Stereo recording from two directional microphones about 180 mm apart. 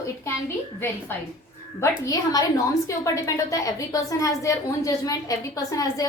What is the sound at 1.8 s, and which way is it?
A woman's voice, 20° left (ahead or behind).